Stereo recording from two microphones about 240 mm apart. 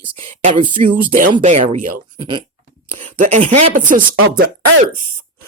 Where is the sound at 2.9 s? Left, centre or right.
Right.